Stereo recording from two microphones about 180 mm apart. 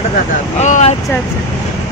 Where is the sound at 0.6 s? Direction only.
40° left (ahead or behind).